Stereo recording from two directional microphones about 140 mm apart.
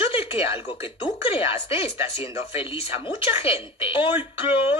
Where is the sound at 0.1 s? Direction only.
40° left (ahead or behind).